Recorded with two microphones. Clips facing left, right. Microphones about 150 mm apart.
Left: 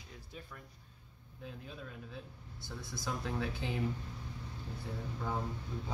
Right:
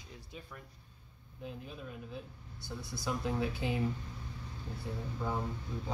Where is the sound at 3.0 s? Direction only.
10° right (ahead or behind).